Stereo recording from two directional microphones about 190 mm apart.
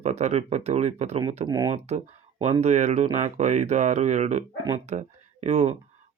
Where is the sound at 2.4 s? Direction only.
35° right (ahead or behind).